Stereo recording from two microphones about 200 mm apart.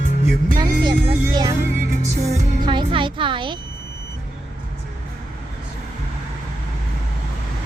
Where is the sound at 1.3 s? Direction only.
20° right (ahead or behind).